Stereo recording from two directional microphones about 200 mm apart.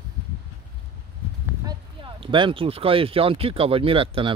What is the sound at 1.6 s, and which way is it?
A man's voice, 25° right (ahead or behind).